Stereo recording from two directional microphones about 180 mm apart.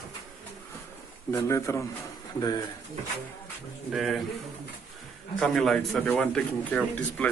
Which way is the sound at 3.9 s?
Centre (ahead or behind).